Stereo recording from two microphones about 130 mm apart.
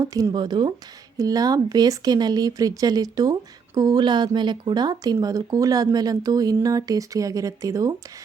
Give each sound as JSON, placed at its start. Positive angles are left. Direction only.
{"t": 0.0, "sound": "speech", "side_deg": -25}